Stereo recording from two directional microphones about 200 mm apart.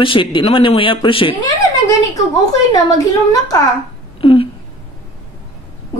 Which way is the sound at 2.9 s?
20° left (ahead or behind).